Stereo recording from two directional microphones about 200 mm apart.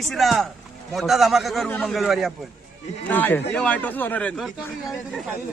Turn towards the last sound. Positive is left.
turn(degrees=0)  # may be behind; listen again after turning